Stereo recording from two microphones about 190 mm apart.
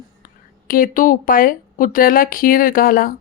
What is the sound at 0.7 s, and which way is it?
Speech, 45° left (ahead or behind).